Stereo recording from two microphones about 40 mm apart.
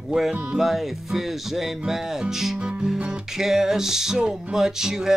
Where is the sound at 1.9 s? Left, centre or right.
Centre.